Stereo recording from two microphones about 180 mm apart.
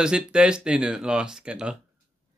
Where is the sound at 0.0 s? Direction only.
5° right (ahead or behind).